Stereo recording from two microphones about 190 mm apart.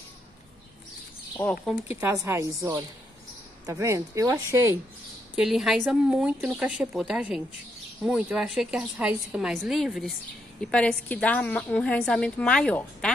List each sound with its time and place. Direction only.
1.3 s speech: 10° left (ahead or behind)
2.0 s speech: 10° right (ahead or behind)
5.3 s a woman's voice: centre (ahead or behind)